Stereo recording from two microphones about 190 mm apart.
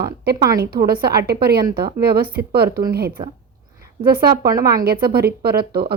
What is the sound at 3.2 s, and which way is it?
Speech, 25° right (ahead or behind).